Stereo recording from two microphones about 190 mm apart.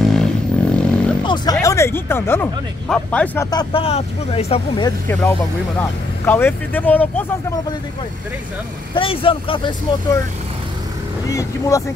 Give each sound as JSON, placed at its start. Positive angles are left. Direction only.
{"t": 0.1, "sound": "a sound", "side_deg": 5}
{"t": 1.2, "sound": "speech", "side_deg": 20}
{"t": 3.4, "sound": "speech", "side_deg": 25}
{"t": 4.8, "sound": "speech", "side_deg": 10}
{"t": 8.9, "sound": "speech", "side_deg": 30}
{"t": 11.2, "sound": "speech", "side_deg": 15}